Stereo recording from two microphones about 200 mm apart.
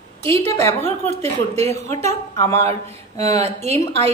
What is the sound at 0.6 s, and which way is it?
Speech, 15° left (ahead or behind).